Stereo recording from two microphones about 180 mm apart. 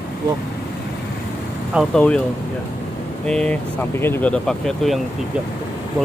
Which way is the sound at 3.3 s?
5° left (ahead or behind).